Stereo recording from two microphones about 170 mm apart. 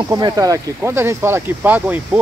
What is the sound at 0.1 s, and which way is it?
Speech, 20° right (ahead or behind).